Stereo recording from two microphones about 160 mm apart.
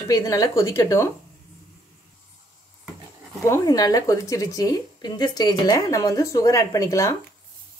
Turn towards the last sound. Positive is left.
turn(degrees=20)  # may be behind; listen again after turning